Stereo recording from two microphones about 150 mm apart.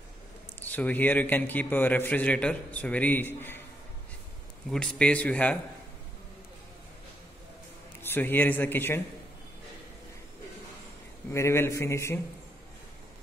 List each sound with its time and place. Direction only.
0.6 s a man's voice: 10° left (ahead or behind)
4.6 s a man's voice: 5° left (ahead or behind)
8.0 s a man's voice: 15° left (ahead or behind)
11.3 s a man's voice: 15° left (ahead or behind)